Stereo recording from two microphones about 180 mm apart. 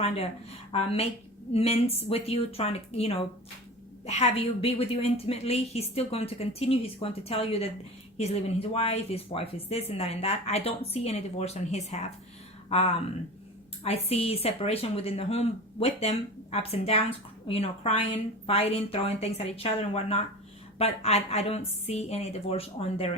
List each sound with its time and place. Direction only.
0.7 s speech: 35° left (ahead or behind)